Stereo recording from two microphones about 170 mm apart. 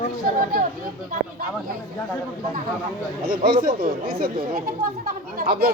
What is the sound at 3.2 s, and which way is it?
Speech, 60° right (ahead or behind).